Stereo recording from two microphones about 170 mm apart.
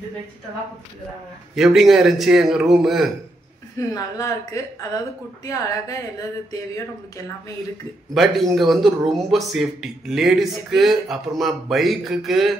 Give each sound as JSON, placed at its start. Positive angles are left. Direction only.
{"t": 1.5, "sound": "a man's voice", "side_deg": 0}
{"t": 3.9, "sound": "a woman's voice", "side_deg": 20}
{"t": 8.1, "sound": "a man's voice", "side_deg": 0}